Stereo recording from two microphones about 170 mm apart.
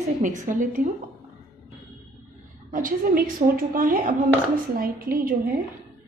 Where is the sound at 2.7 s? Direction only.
55° right (ahead or behind).